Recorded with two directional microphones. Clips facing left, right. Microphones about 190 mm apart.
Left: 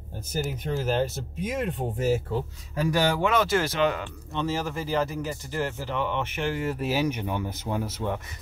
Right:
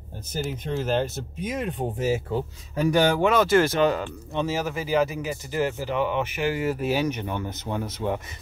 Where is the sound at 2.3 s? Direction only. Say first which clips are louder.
Right 2 dB; 20° right (ahead or behind).